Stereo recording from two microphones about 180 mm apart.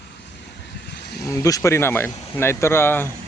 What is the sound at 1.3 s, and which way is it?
Speech, 20° left (ahead or behind).